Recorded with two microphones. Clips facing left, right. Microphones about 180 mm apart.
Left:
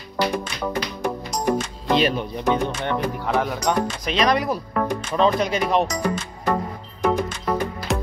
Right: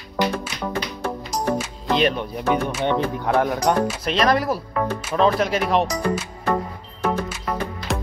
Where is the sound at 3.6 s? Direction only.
5° right (ahead or behind).